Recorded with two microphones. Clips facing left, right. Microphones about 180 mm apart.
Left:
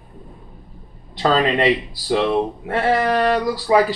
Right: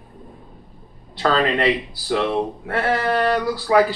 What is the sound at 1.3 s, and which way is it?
Speech, 15° left (ahead or behind).